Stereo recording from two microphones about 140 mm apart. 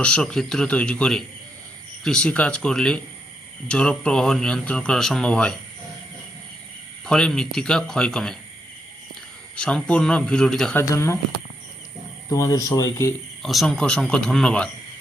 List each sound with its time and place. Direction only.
0.0 s speech: 5° left (ahead or behind)
7.0 s speech: 5° left (ahead or behind)
9.6 s speech: 5° left (ahead or behind)
10.8 s speech: 20° left (ahead or behind)
12.3 s speech: 25° left (ahead or behind)
13.4 s speech: centre (ahead or behind)